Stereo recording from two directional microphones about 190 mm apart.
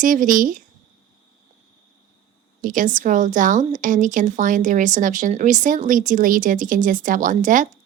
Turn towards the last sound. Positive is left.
turn(degrees=-45)  # may be behind; listen again after turning